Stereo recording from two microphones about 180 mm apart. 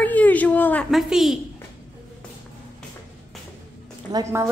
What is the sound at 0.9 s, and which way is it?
Speech, centre (ahead or behind).